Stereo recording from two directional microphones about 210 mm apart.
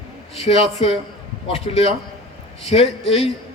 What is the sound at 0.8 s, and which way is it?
A man's voice, 25° left (ahead or behind).